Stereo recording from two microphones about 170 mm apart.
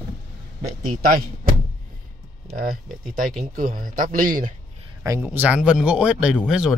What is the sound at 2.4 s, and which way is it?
A man's voice, 55° right (ahead or behind).